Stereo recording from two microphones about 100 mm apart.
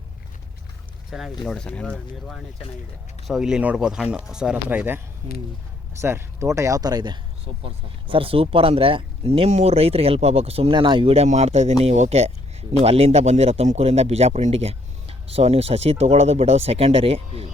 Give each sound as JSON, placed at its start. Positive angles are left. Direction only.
{"t": 1.1, "sound": "speech", "side_deg": -5}
{"t": 1.5, "sound": "speech", "side_deg": 10}
{"t": 3.2, "sound": "speech", "side_deg": -5}
{"t": 4.7, "sound": "speech", "side_deg": -15}
{"t": 6.0, "sound": "speech", "side_deg": -25}
{"t": 7.4, "sound": "speech", "side_deg": -60}
{"t": 10.8, "sound": "speech", "side_deg": -55}
{"t": 11.1, "sound": "a man's voice", "side_deg": -90}